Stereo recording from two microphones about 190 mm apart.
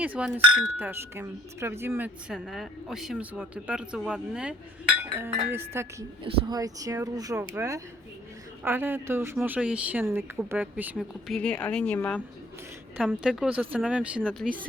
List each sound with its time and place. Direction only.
0.0 s speech: 5° right (ahead or behind)
10.9 s a woman's voice: 5° left (ahead or behind)
13.2 s a woman's voice: 5° right (ahead or behind)
14.2 s speech: 5° left (ahead or behind)